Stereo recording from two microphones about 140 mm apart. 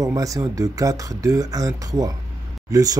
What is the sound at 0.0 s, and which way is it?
Speech, 25° right (ahead or behind).